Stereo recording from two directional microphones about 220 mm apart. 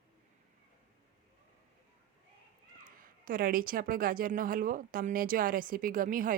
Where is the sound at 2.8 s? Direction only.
40° right (ahead or behind).